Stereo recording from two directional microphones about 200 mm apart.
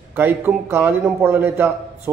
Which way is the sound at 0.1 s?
10° right (ahead or behind).